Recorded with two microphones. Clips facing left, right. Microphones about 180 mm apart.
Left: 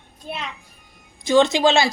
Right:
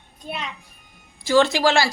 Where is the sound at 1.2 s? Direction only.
20° left (ahead or behind).